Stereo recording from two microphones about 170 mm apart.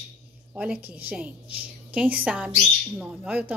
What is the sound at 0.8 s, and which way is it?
A woman's voice, 10° right (ahead or behind).